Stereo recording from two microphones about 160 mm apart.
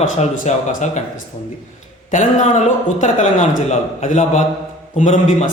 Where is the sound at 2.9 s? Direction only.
50° left (ahead or behind).